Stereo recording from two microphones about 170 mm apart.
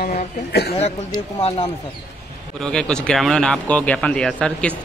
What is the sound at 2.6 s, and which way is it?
Speech, 5° left (ahead or behind).